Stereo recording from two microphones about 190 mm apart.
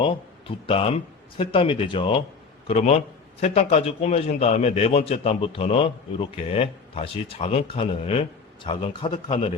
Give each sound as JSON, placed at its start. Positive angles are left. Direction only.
{"t": 0.0, "sound": "a man's voice", "side_deg": 30}